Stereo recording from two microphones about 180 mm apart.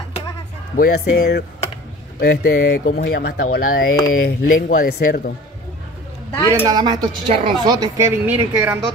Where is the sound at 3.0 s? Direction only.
65° left (ahead or behind).